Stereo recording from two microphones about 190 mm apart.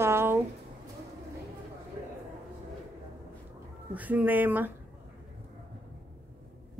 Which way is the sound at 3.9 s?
10° right (ahead or behind).